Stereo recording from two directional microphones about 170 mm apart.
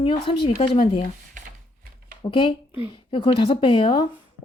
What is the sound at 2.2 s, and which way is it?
A woman's voice, 30° left (ahead or behind).